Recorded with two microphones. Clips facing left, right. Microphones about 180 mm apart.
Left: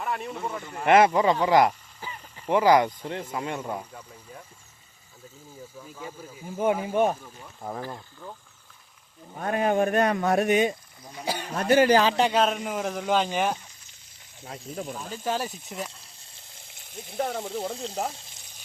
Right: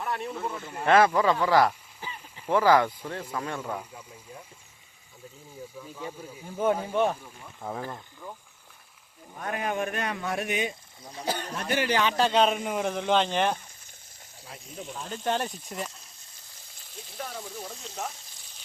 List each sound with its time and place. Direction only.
0.0 s speech: centre (ahead or behind)
0.9 s speech: 20° left (ahead or behind)
5.8 s speech: 5° left (ahead or behind)
9.3 s speech: 35° left (ahead or behind)
11.3 s speech: 10° left (ahead or behind)
11.5 s speech: 45° left (ahead or behind)
12.3 s speech: centre (ahead or behind)
14.9 s speech: 5° left (ahead or behind)
17.2 s speech: 60° left (ahead or behind)
17.8 s speech: 35° left (ahead or behind)